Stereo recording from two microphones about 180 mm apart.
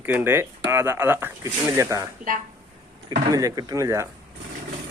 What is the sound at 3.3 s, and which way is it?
Speech, 20° right (ahead or behind).